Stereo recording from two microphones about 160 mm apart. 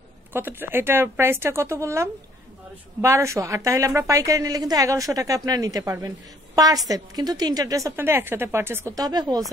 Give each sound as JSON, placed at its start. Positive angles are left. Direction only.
{"t": 0.3, "sound": "a woman's voice", "side_deg": -15}